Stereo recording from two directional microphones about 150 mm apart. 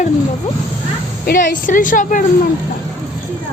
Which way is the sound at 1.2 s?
65° left (ahead or behind).